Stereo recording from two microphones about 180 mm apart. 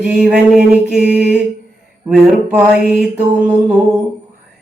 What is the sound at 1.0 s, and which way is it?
Mantra, 65° right (ahead or behind).